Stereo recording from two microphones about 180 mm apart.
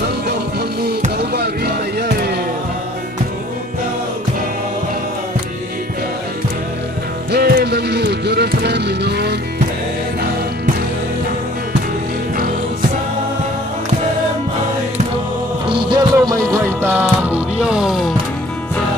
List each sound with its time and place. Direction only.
1.1 s a sound: 65° right (ahead or behind)
7.2 s music: 60° right (ahead or behind)
15.7 s music: 25° right (ahead or behind)
16.8 s music: 10° right (ahead or behind)